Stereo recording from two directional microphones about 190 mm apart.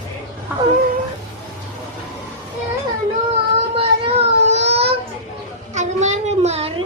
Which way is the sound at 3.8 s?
30° right (ahead or behind).